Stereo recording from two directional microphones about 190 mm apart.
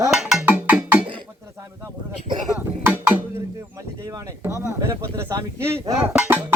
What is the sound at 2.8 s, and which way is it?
Speech, 10° right (ahead or behind).